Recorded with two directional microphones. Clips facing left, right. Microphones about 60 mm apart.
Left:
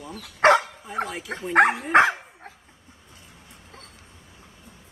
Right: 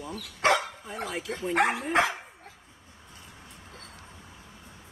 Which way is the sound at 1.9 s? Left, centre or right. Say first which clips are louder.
Left 8 dB; left.